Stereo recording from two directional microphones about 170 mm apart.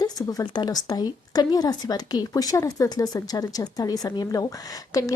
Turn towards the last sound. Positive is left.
turn(degrees=20)  # may be behind; listen again after turning